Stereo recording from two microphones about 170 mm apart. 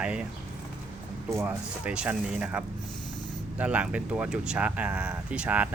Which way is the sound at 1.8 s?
5° right (ahead or behind).